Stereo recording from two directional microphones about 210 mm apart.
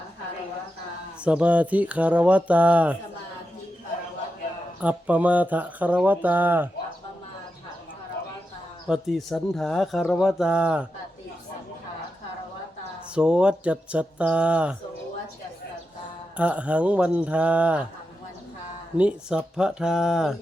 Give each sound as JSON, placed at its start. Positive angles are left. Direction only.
{"t": 1.2, "sound": "speech", "side_deg": -5}
{"t": 4.8, "sound": "speech", "side_deg": -5}
{"t": 8.9, "sound": "speech", "side_deg": 0}
{"t": 13.1, "sound": "speech", "side_deg": -5}
{"t": 16.4, "sound": "speech", "side_deg": -5}
{"t": 18.9, "sound": "speech", "side_deg": -5}